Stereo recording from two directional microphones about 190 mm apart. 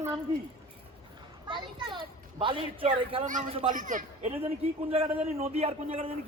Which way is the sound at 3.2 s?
40° right (ahead or behind).